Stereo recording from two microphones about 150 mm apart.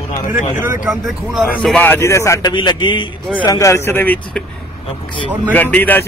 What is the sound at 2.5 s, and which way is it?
Speech, 30° left (ahead or behind).